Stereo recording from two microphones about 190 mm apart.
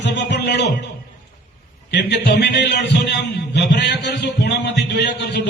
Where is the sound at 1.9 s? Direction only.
65° left (ahead or behind).